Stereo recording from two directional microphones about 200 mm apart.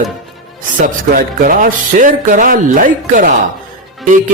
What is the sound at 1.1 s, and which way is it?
Speech, 45° right (ahead or behind).